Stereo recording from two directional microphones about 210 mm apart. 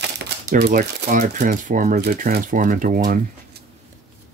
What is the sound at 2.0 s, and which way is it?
Speech, 50° right (ahead or behind).